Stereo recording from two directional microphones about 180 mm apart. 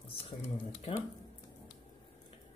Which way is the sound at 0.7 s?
35° left (ahead or behind).